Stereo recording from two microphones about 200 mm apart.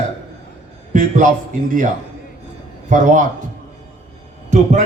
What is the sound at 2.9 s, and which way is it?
Speech, 40° right (ahead or behind).